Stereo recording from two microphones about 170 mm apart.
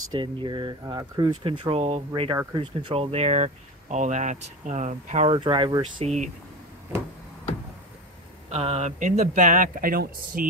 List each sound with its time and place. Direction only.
0.1 s speech: 25° right (ahead or behind)
5.4 s speech: 25° right (ahead or behind)
6.0 s speech: 45° right (ahead or behind)
8.5 s speech: 35° right (ahead or behind); by 10.4 s 60° right (ahead or behind)